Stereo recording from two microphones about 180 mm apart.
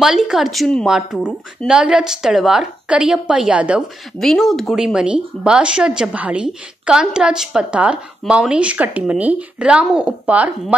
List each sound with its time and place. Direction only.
0.0 s speech: centre (ahead or behind)